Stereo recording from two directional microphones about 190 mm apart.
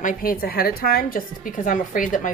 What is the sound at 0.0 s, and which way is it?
A woman's voice, 50° left (ahead or behind).